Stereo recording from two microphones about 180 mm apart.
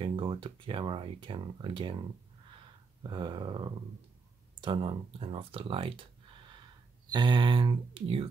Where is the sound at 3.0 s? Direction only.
25° right (ahead or behind).